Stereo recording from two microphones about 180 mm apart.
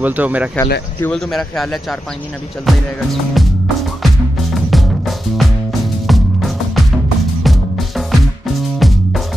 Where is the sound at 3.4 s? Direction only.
Centre (ahead or behind).